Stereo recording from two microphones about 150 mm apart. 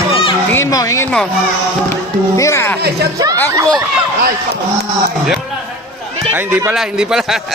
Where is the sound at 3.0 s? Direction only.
90° right.